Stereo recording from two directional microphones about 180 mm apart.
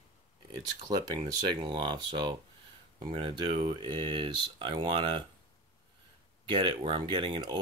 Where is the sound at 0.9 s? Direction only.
20° right (ahead or behind).